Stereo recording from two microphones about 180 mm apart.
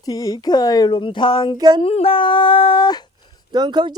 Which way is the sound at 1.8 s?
30° left (ahead or behind).